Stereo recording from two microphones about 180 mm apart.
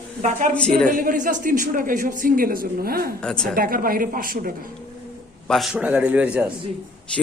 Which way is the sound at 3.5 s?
50° right (ahead or behind).